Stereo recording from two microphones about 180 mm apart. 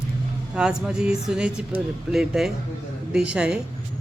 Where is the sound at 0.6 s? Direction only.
5° right (ahead or behind).